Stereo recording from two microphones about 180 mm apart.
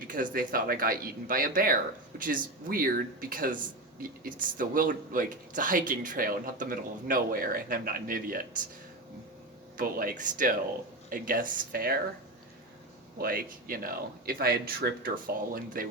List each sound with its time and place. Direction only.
0.1 s speech: 50° right (ahead or behind)
9.7 s speech: 50° right (ahead or behind)
13.1 s speech: 55° right (ahead or behind)